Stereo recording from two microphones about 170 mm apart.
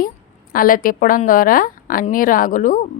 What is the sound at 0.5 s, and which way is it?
A woman's voice, 55° left (ahead or behind).